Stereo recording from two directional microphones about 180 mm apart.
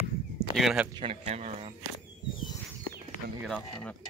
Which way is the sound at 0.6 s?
Centre (ahead or behind).